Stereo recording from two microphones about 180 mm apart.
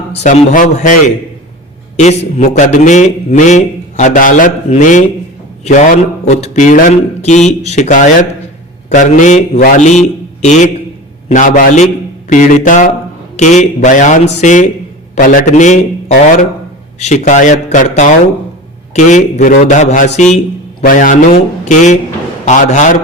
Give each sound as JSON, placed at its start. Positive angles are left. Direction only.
{"t": 0.2, "sound": "a man's voice", "side_deg": 40}